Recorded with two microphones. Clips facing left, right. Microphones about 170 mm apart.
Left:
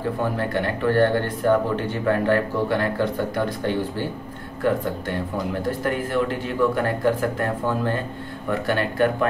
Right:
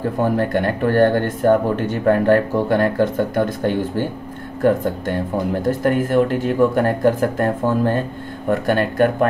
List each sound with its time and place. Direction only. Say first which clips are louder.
0.2 s speech: right 8 dB; 45° right (ahead or behind)